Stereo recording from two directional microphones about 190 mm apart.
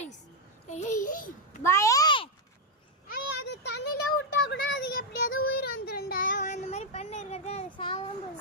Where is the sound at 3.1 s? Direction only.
65° left (ahead or behind).